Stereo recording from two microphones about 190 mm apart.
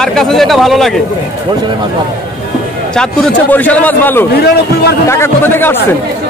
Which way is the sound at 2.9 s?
5° left (ahead or behind).